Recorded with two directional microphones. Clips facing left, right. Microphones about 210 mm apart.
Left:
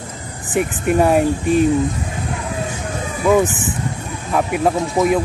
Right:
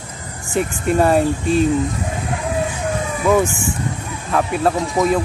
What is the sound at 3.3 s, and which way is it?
Speech, 15° left (ahead or behind).